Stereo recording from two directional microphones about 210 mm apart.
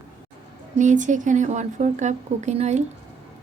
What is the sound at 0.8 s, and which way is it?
Speech, 35° right (ahead or behind).